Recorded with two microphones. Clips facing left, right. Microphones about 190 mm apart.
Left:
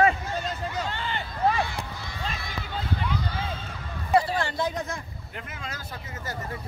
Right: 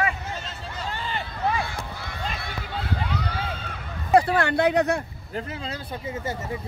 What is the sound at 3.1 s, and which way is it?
Run, 65° right (ahead or behind).